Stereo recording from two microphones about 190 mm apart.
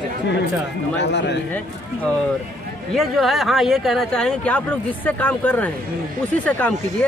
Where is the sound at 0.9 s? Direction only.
65° left (ahead or behind).